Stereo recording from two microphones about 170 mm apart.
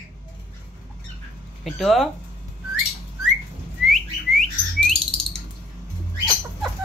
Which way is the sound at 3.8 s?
Centre (ahead or behind).